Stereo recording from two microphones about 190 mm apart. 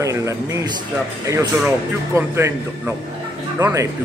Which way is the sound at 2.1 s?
15° right (ahead or behind).